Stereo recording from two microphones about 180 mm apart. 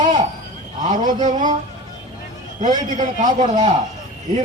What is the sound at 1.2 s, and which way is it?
Speech, 45° right (ahead or behind).